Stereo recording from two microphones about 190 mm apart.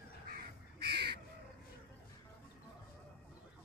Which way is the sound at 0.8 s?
60° right (ahead or behind).